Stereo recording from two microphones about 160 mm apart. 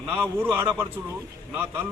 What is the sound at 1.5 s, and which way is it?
Speech, 10° right (ahead or behind).